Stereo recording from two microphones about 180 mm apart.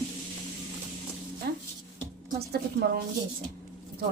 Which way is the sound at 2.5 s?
65° right (ahead or behind).